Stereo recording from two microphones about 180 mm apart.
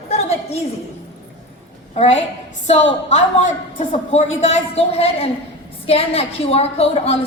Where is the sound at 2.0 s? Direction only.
35° left (ahead or behind).